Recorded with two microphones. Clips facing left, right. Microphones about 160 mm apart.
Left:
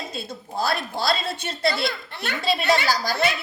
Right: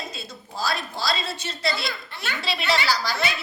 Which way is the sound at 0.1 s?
55° left (ahead or behind).